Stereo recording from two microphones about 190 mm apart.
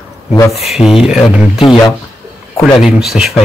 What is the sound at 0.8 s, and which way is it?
Speech, 25° left (ahead or behind).